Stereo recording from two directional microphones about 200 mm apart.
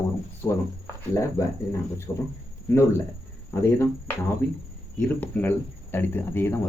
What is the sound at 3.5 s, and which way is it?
Speech, 15° left (ahead or behind).